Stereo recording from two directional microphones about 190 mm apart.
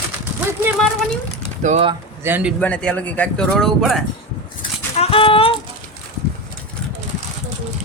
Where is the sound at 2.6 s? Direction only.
5° left (ahead or behind).